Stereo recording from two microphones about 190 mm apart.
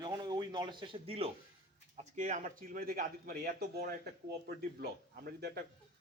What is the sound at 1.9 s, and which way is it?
Speech, 40° right (ahead or behind).